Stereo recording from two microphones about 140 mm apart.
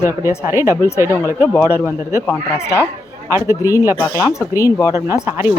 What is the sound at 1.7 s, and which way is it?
Speech, 20° left (ahead or behind).